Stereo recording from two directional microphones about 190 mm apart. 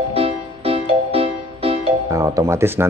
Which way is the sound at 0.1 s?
30° right (ahead or behind).